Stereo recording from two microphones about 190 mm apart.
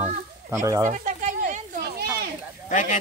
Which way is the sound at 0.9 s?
40° right (ahead or behind).